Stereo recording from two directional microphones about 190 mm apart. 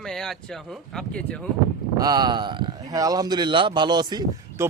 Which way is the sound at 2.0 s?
20° right (ahead or behind).